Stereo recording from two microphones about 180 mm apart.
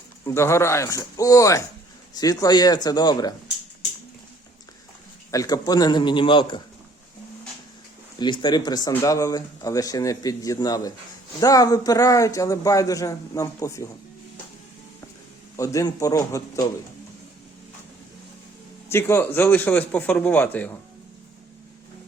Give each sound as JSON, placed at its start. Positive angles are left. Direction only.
{"t": 0.3, "sound": "a man's voice", "side_deg": 15}
{"t": 5.3, "sound": "a man's voice", "side_deg": 20}
{"t": 8.2, "sound": "a man's voice", "side_deg": 25}
{"t": 15.5, "sound": "speech", "side_deg": 20}
{"t": 18.9, "sound": "speech", "side_deg": 15}